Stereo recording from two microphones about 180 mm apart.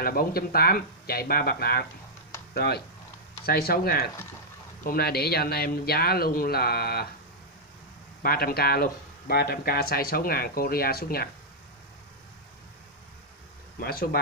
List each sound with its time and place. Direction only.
0.0 s speech: 55° left (ahead or behind)
8.2 s speech: 55° left (ahead or behind)
13.7 s speech: 55° left (ahead or behind)